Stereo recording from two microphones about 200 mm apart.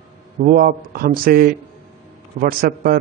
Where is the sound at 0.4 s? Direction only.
45° right (ahead or behind).